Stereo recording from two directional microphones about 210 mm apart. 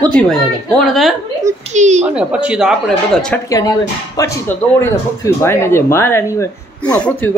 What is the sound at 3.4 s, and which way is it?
Speech, 15° left (ahead or behind).